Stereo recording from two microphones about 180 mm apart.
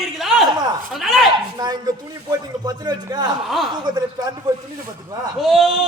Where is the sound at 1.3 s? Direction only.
20° right (ahead or behind).